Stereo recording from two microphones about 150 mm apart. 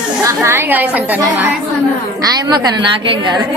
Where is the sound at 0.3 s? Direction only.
15° right (ahead or behind).